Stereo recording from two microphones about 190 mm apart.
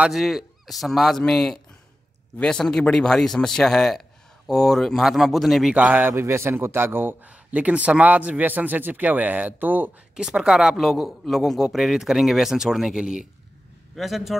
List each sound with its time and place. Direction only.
0.0 s speech: centre (ahead or behind)